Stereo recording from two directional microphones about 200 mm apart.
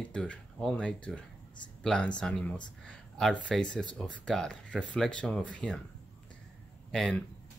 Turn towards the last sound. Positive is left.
turn(degrees=0)  # may be behind; listen again after turning